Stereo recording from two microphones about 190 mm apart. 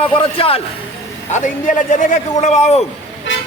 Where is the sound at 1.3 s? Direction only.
40° left (ahead or behind).